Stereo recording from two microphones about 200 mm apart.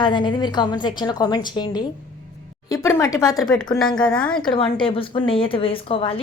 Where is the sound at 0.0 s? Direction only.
25° left (ahead or behind).